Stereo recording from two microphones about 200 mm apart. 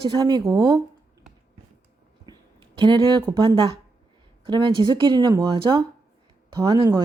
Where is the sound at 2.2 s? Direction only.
20° right (ahead or behind).